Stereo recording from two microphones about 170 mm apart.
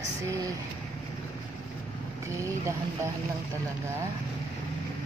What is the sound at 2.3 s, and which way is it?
Speech, 15° right (ahead or behind).